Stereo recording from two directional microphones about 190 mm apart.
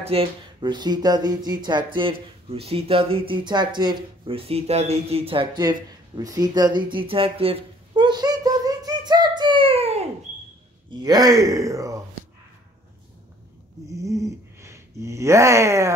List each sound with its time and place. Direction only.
0.0 s speech: 30° right (ahead or behind)
10.9 s speech: 20° right (ahead or behind)
13.9 s speech: 15° right (ahead or behind)